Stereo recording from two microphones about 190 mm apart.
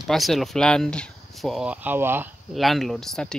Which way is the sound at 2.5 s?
Centre (ahead or behind).